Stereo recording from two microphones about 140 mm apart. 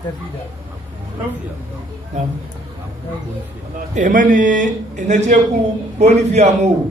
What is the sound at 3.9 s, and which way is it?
A man's voice, 75° right (ahead or behind).